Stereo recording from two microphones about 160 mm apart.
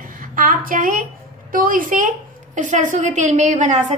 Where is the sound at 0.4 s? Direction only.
60° right (ahead or behind).